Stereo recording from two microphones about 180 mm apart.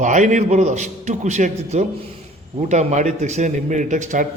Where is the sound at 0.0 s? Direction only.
45° right (ahead or behind).